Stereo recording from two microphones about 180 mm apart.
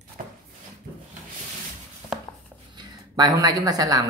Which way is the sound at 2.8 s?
20° right (ahead or behind).